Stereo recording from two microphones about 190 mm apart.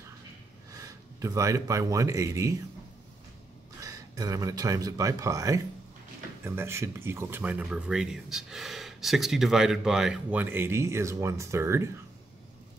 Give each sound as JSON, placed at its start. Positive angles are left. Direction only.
{"t": 0.7, "sound": "speech", "side_deg": -15}
{"t": 3.8, "sound": "speech", "side_deg": -20}